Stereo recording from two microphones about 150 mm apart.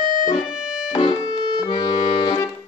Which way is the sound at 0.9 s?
30° left (ahead or behind).